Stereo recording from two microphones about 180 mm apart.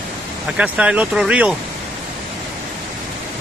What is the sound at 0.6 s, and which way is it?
Speech, 5° right (ahead or behind).